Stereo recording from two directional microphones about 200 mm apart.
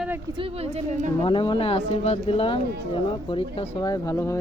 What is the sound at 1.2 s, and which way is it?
Speech, 25° left (ahead or behind).